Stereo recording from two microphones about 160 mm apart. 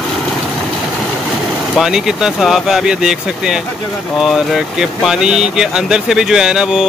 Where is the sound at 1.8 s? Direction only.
5° right (ahead or behind).